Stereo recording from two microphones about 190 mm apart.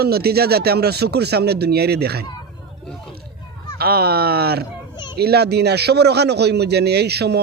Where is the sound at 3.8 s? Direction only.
55° right (ahead or behind).